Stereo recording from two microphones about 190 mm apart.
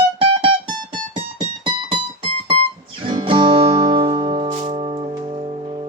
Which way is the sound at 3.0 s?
25° right (ahead or behind).